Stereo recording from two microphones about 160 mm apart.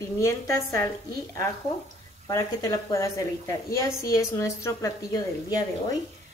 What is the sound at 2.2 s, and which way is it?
A woman's voice, 20° left (ahead or behind).